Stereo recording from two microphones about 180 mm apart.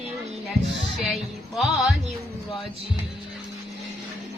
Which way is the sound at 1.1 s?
Centre (ahead or behind).